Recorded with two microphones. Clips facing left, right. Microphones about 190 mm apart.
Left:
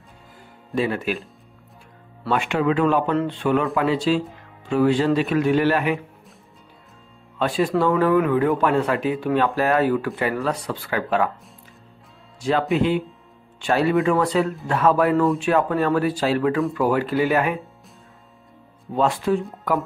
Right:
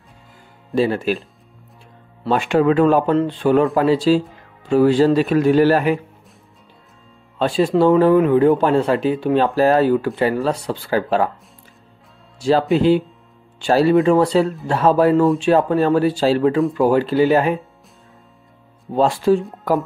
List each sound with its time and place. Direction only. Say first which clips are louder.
0.7 s speech: right 5 dB; 30° right (ahead or behind)
2.2 s speech: right 5 dB; 35° right (ahead or behind)
7.3 s speech: right 4 dB; 30° right (ahead or behind)
12.4 s speech: right 4 dB; 30° right (ahead or behind)
18.9 s speech: right 5 dB; 30° right (ahead or behind)